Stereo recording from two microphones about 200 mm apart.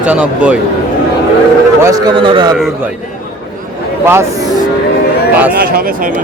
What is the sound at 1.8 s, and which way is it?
Speech, 20° right (ahead or behind).